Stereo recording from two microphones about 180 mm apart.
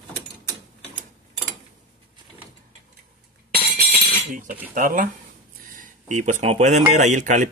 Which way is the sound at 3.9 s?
45° right (ahead or behind).